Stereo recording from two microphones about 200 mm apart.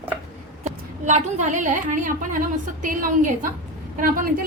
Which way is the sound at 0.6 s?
35° right (ahead or behind).